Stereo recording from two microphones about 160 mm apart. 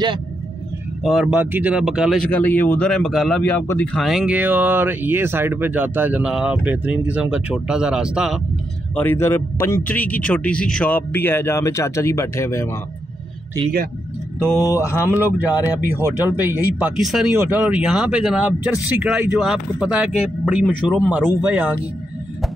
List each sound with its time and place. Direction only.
1.0 s a man's voice: centre (ahead or behind)
2.3 s a man's voice: 10° left (ahead or behind); by 8.4 s 5° right (ahead or behind)
8.9 s a man's voice: 15° left (ahead or behind)
14.7 s a man's voice: 15° left (ahead or behind)
15.0 s speech: 10° right (ahead or behind)